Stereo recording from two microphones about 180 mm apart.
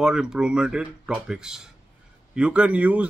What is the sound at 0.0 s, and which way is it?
A man's voice, 5° right (ahead or behind).